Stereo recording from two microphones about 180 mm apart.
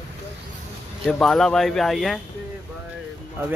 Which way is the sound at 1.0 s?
Centre (ahead or behind).